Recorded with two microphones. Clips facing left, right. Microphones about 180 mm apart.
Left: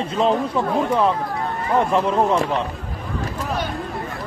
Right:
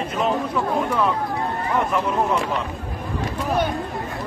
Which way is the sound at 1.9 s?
30° left (ahead or behind).